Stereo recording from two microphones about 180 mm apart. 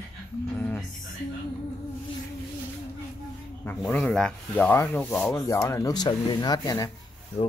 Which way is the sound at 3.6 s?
10° left (ahead or behind).